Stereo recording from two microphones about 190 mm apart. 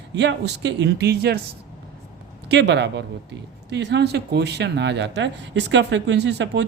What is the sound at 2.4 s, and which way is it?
Speech, 65° right (ahead or behind).